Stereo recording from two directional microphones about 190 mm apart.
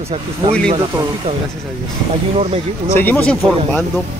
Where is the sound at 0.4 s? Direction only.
20° right (ahead or behind).